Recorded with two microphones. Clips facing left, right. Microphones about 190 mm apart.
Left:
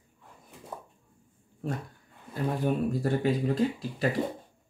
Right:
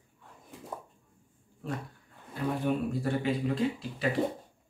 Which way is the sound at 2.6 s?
40° left (ahead or behind).